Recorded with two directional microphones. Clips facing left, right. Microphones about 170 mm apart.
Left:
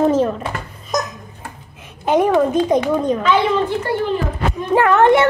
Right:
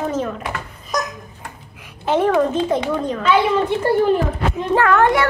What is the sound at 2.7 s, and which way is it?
Speech, 15° left (ahead or behind).